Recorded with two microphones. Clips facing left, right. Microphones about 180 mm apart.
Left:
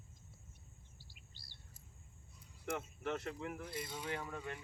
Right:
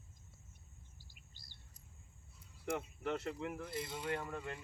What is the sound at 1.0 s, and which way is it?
Bird vocalization, 45° right (ahead or behind).